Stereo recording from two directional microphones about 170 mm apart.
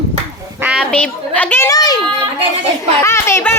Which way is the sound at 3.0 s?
15° left (ahead or behind).